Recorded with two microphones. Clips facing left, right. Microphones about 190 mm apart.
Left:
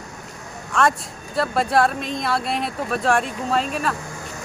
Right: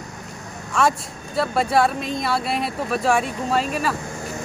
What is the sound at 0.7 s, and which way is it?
A man's voice, centre (ahead or behind).